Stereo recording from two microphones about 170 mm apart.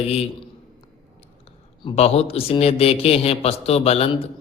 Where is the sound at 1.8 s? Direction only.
35° left (ahead or behind).